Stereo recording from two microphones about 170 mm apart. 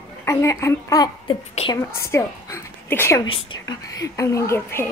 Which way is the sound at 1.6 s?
40° left (ahead or behind).